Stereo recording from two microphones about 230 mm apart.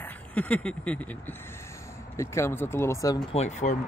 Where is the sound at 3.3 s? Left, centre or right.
Left.